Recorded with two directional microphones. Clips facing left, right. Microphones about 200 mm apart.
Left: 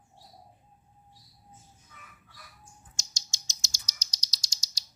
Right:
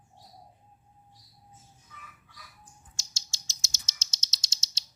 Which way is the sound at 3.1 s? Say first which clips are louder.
Left 1 dB; 15° left (ahead or behind).